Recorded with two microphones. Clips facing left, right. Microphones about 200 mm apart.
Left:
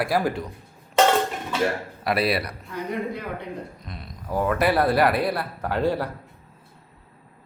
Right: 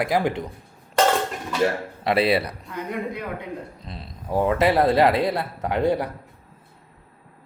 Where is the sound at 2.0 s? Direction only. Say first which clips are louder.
Right 3 dB; 25° right (ahead or behind).